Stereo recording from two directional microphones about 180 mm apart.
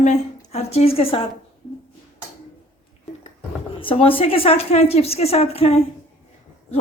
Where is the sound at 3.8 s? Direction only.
30° left (ahead or behind).